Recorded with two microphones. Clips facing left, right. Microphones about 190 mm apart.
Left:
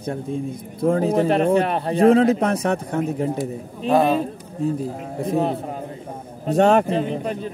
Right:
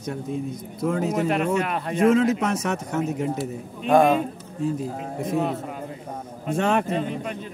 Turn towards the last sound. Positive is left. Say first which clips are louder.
# left 5 dB
turn(degrees=35)  # may be behind; listen again after turning